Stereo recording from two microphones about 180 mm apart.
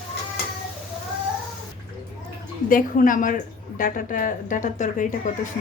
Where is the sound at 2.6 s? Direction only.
50° left (ahead or behind).